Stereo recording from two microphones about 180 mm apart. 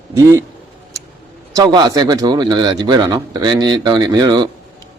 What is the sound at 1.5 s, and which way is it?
A man's voice, 25° right (ahead or behind).